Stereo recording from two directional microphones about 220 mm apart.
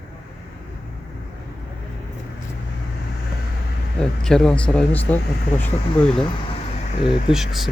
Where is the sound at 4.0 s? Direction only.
5° left (ahead or behind).